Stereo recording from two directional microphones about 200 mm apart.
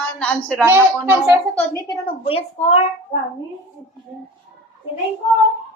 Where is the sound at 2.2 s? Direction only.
30° left (ahead or behind).